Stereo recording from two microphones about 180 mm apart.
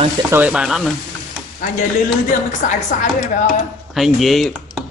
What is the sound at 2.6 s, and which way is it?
Speech, 45° left (ahead or behind).